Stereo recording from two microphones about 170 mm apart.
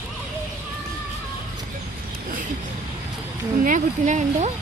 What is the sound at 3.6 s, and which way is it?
Speech, 45° right (ahead or behind).